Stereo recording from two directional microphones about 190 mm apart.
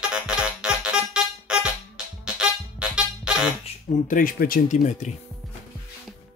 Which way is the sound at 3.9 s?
45° left (ahead or behind).